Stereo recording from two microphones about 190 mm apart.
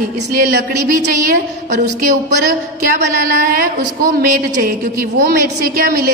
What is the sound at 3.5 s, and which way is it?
A woman's voice, 50° right (ahead or behind).